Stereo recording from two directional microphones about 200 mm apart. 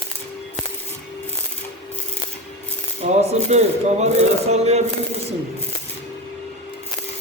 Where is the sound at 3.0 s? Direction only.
35° right (ahead or behind).